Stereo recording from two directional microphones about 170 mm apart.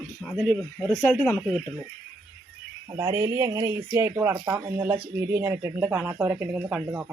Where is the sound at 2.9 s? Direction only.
25° right (ahead or behind).